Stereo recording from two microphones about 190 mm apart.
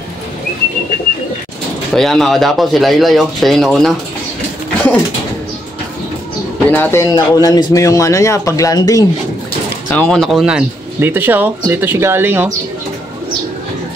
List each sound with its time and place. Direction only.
2.0 s speech: centre (ahead or behind)
6.7 s speech: 10° left (ahead or behind)
9.9 s speech: 5° left (ahead or behind)